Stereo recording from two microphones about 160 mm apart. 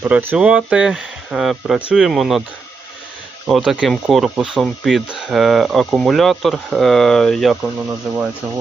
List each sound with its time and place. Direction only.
0.0 s speech: 10° right (ahead or behind)
3.4 s speech: 5° right (ahead or behind)